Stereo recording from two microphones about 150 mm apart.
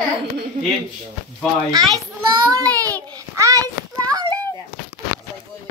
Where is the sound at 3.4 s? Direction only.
20° right (ahead or behind).